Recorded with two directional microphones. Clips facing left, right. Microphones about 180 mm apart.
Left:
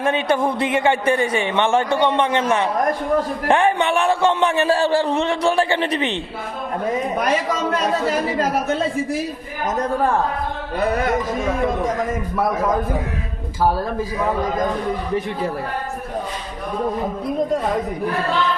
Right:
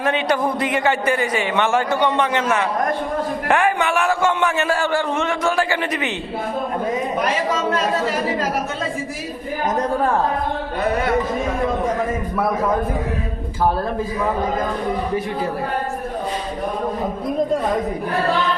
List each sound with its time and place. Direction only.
0.0 s a man's voice: 25° left (ahead or behind)
3.5 s a man's voice: 30° left (ahead or behind)